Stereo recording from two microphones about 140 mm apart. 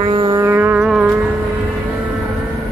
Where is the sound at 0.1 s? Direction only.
35° right (ahead or behind).